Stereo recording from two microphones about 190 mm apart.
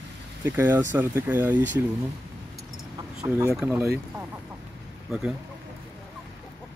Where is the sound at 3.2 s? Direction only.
20° right (ahead or behind).